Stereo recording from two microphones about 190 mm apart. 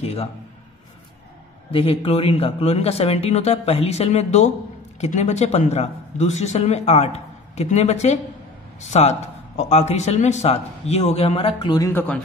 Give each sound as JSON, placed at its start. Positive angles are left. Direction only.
{"t": 0.0, "sound": "a man's voice", "side_deg": 35}
{"t": 1.7, "sound": "a man's voice", "side_deg": 30}
{"t": 11.9, "sound": "speech", "side_deg": 10}